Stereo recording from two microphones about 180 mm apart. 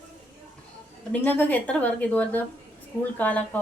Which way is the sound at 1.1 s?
10° left (ahead or behind).